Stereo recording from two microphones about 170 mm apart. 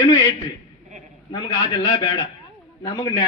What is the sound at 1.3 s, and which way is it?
A man's voice, 25° left (ahead or behind).